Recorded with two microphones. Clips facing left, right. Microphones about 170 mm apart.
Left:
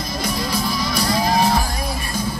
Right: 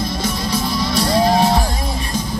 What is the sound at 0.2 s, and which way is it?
Music, 25° right (ahead or behind).